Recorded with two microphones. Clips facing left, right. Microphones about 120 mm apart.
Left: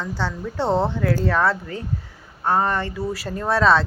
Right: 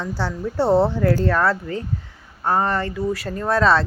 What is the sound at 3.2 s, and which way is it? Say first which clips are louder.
Speech: left 1 dB; centre (ahead or behind).